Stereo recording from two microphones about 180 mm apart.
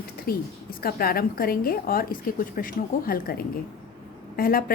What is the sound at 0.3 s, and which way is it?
A woman's voice, 55° left (ahead or behind).